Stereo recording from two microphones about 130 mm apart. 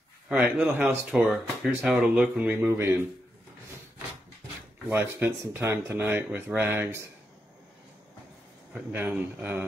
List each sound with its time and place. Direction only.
0.3 s speech: 10° right (ahead or behind)
4.8 s speech: 15° right (ahead or behind)
8.9 s speech: 15° right (ahead or behind)